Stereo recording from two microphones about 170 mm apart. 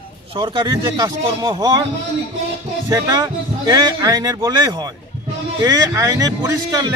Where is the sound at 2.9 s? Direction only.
20° right (ahead or behind).